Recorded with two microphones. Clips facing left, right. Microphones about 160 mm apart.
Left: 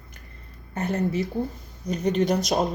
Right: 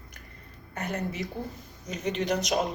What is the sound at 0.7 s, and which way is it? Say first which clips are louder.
Speech: left 7 dB; 30° left (ahead or behind).